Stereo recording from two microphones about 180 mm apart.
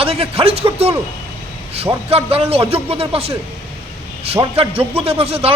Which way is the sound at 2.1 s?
35° right (ahead or behind).